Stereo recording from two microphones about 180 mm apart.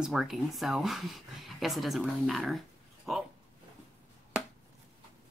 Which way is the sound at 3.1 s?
Centre (ahead or behind).